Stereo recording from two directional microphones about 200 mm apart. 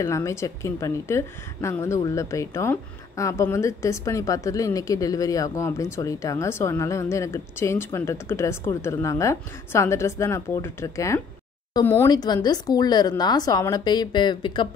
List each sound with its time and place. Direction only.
0.0 s a woman's voice: 15° left (ahead or behind)